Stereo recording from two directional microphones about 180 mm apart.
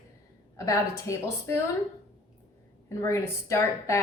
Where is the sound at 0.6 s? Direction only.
15° left (ahead or behind).